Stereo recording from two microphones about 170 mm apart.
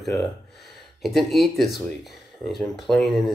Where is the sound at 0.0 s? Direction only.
Centre (ahead or behind).